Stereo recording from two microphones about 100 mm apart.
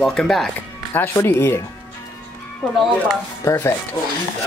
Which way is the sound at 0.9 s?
25° left (ahead or behind).